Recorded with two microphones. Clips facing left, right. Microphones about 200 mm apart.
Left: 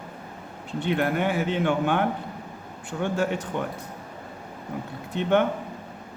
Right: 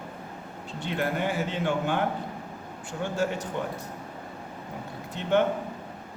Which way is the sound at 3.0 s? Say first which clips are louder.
Left 3 dB; 60° left (ahead or behind).